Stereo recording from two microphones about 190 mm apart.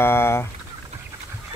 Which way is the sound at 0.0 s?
10° left (ahead or behind).